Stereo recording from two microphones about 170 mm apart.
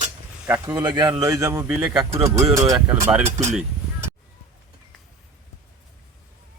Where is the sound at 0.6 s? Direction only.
25° right (ahead or behind).